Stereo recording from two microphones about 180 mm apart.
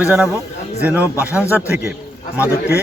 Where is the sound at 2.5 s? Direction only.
65° left (ahead or behind).